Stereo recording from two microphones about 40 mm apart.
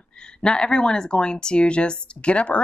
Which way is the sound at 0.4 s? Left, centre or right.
Left.